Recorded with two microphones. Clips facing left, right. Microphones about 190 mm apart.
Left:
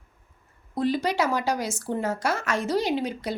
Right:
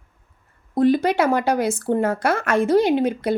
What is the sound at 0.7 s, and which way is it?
Speech, 55° right (ahead or behind).